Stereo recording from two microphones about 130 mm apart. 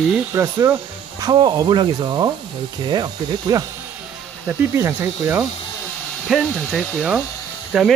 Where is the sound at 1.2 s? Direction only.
30° right (ahead or behind).